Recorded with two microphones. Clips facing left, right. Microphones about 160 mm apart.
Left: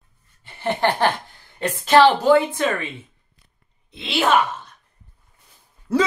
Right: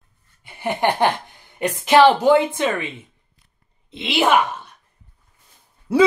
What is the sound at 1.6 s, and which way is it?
A woman's voice, 15° right (ahead or behind).